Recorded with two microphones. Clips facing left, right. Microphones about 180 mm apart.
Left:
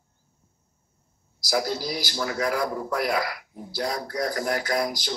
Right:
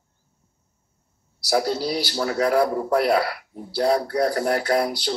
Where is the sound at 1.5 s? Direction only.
30° right (ahead or behind).